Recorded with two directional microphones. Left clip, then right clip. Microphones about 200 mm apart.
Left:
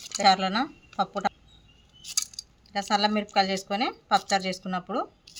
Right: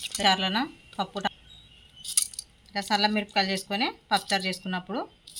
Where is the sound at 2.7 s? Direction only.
20° left (ahead or behind).